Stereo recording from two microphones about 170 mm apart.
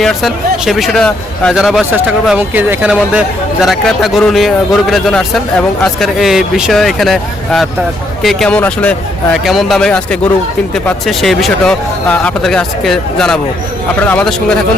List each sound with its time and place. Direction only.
0.0 s speech: centre (ahead or behind)